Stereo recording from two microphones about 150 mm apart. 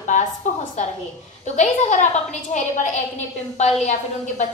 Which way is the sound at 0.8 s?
50° left (ahead or behind).